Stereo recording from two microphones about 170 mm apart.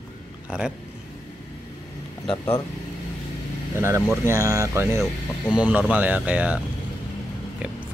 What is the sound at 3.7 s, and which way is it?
Speech, 15° right (ahead or behind).